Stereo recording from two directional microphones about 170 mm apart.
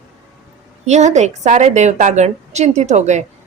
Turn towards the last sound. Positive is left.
turn(degrees=-45)  # may be behind; listen again after turning